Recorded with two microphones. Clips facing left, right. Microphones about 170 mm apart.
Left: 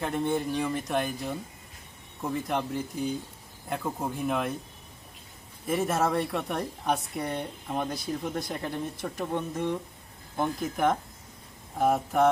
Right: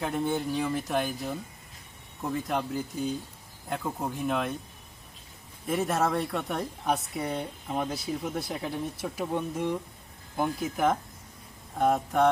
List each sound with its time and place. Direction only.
0.0 s speech: centre (ahead or behind)
5.6 s speech: centre (ahead or behind)